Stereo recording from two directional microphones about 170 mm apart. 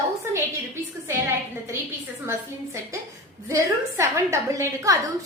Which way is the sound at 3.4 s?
15° right (ahead or behind).